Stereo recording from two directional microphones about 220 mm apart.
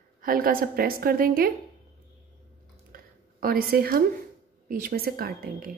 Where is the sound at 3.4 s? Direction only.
45° right (ahead or behind).